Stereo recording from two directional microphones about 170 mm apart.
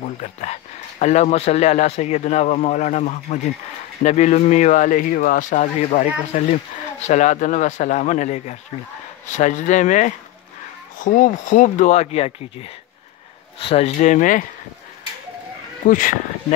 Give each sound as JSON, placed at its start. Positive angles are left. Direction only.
{"t": 0.2, "sound": "a man's voice", "side_deg": 45}
{"t": 13.9, "sound": "speech", "side_deg": 45}
{"t": 15.9, "sound": "speech", "side_deg": 50}